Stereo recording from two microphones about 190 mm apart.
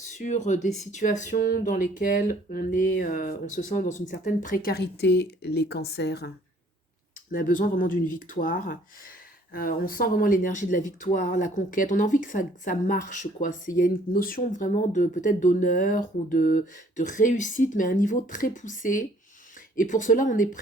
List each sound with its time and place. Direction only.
0.0 s speech: 40° left (ahead or behind); by 6.3 s 60° left (ahead or behind)
7.3 s speech: 45° left (ahead or behind)